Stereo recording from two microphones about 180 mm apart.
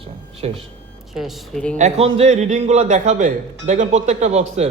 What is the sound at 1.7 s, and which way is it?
A man's voice, 35° right (ahead or behind).